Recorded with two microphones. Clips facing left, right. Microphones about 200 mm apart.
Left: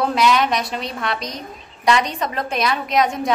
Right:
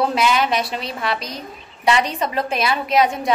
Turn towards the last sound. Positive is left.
turn(degrees=0)  # may be behind; listen again after turning